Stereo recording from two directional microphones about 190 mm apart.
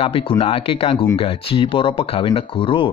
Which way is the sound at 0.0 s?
30° left (ahead or behind).